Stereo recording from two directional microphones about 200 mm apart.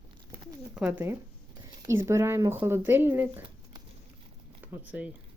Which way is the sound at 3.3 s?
25° right (ahead or behind).